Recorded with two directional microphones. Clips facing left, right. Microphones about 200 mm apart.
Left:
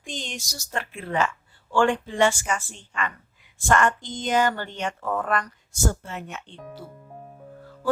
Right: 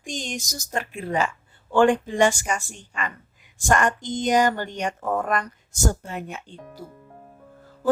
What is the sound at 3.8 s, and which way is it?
Speech, 45° right (ahead or behind).